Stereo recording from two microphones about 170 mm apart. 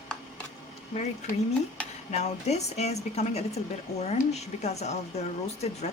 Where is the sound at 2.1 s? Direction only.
40° left (ahead or behind).